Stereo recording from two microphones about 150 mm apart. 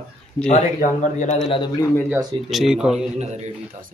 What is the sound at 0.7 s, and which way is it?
Speech, 55° left (ahead or behind).